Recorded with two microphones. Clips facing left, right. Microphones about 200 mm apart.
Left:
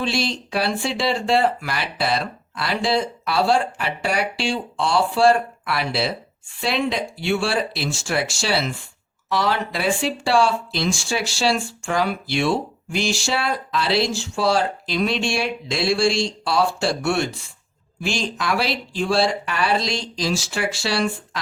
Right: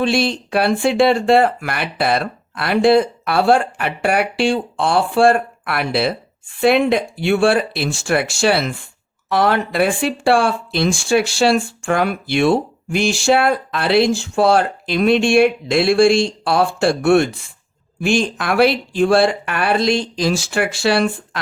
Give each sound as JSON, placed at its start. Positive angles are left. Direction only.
{"t": 0.0, "sound": "speech", "side_deg": -55}